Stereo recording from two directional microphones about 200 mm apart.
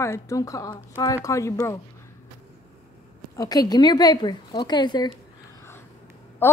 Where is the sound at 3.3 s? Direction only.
20° left (ahead or behind).